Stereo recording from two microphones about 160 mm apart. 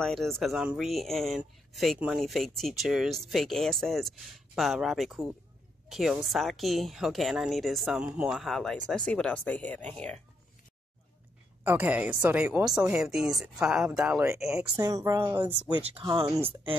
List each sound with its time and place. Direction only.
0.0 s speech: 5° left (ahead or behind)
11.6 s speech: 10° right (ahead or behind)
14.2 s speech: 20° right (ahead or behind)
15.8 s speech: 30° right (ahead or behind)